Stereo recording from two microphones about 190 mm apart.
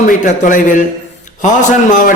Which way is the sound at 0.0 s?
40° left (ahead or behind).